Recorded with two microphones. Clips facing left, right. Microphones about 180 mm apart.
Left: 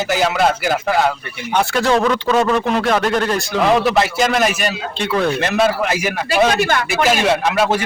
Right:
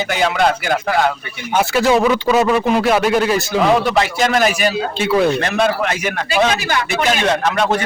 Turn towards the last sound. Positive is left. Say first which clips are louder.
# even
turn(degrees=5)  # may be behind; listen again after turning